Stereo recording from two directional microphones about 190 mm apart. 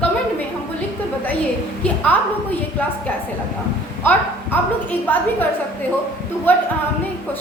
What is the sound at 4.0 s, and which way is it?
A woman's voice, 10° left (ahead or behind).